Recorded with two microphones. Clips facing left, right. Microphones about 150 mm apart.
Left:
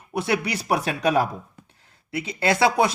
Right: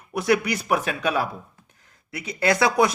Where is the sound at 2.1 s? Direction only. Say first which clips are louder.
Even; 25° left (ahead or behind).